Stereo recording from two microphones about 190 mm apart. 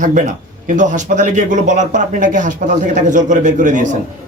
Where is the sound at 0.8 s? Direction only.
40° right (ahead or behind).